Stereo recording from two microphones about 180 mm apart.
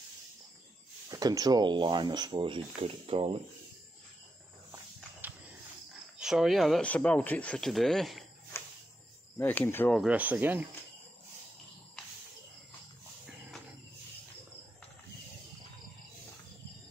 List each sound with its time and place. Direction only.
1.0 s speech: 20° right (ahead or behind)
5.2 s a sound: 10° right (ahead or behind)
6.1 s speech: centre (ahead or behind)
9.4 s speech: 10° left (ahead or behind)
10.0 s speech: 10° right (ahead or behind)